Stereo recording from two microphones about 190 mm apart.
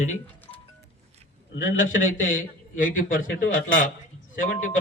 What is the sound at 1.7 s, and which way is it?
A man's voice, 45° left (ahead or behind).